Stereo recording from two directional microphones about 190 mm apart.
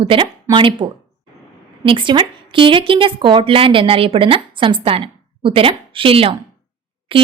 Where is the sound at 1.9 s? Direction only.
25° right (ahead or behind).